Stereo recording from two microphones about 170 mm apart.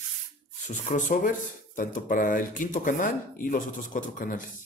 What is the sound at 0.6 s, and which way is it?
Speech, 50° left (ahead or behind).